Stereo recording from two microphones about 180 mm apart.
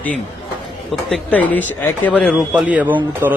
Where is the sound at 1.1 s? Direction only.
10° left (ahead or behind).